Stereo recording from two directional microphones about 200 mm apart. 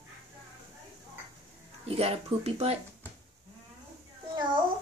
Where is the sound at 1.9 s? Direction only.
30° right (ahead or behind).